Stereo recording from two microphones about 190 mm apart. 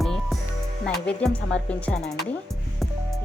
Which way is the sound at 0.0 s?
Centre (ahead or behind).